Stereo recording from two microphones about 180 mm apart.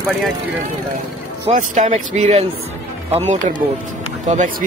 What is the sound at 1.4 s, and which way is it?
Speech, 40° right (ahead or behind).